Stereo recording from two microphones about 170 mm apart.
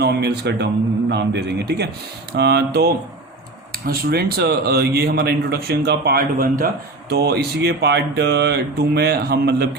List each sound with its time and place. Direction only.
0.0 s a man's voice: 70° right (ahead or behind)
7.1 s a man's voice: 70° right (ahead or behind)